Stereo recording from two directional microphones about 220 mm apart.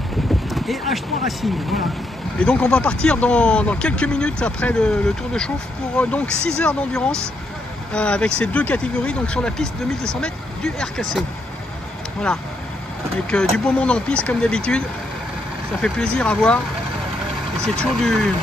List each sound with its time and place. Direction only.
0.6 s speech: centre (ahead or behind)
13.3 s speech: 5° left (ahead or behind)
15.8 s speech: 5° left (ahead or behind)
17.7 s speech: centre (ahead or behind)